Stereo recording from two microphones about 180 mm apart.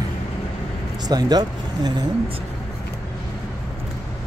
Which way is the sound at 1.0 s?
20° right (ahead or behind).